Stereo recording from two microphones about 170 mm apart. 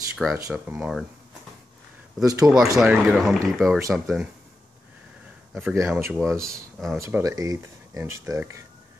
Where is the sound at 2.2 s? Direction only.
20° right (ahead or behind).